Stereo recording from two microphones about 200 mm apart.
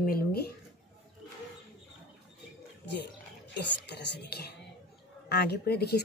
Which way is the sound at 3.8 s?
55° left (ahead or behind).